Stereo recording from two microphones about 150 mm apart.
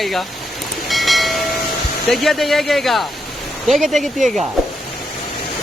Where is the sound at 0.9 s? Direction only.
Centre (ahead or behind).